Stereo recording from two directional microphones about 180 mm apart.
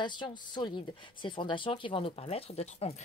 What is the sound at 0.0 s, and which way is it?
Speech, 25° left (ahead or behind).